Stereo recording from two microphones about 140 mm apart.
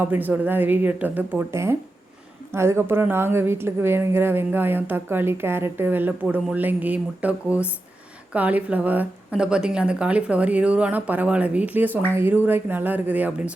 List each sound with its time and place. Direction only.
0.0 s a woman's voice: 15° right (ahead or behind)